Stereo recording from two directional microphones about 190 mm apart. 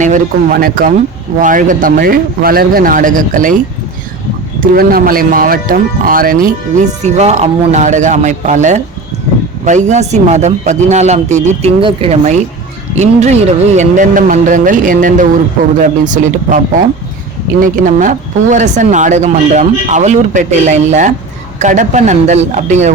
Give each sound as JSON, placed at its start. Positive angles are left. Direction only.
{"t": 0.0, "sound": "speech", "side_deg": -45}
{"t": 4.6, "sound": "speech", "side_deg": -50}
{"t": 7.0, "sound": "speech", "side_deg": -35}
{"t": 17.6, "sound": "speech", "side_deg": -45}